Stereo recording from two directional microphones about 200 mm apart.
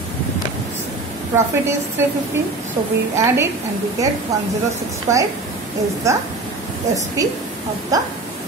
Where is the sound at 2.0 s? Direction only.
15° right (ahead or behind).